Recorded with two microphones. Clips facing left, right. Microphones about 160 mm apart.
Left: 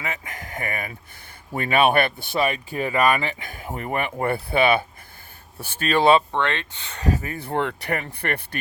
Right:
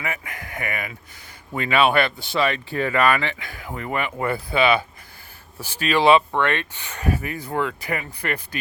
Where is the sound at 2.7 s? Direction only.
15° left (ahead or behind).